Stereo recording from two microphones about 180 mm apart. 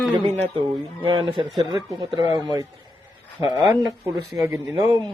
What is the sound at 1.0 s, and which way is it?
Speech, 30° right (ahead or behind).